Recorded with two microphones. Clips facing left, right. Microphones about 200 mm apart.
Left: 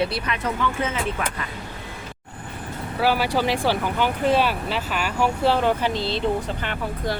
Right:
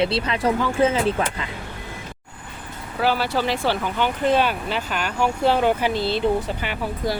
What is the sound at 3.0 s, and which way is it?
Speech, 10° left (ahead or behind).